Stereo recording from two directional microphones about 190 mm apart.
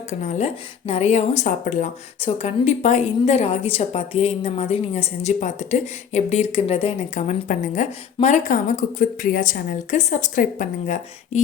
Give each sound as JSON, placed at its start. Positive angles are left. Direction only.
{"t": 0.1, "sound": "speech", "side_deg": 35}